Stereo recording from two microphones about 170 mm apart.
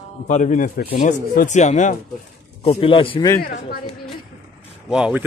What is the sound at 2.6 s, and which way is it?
Speech, 35° left (ahead or behind).